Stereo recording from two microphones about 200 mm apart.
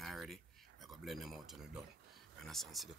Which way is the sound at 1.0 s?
Centre (ahead or behind).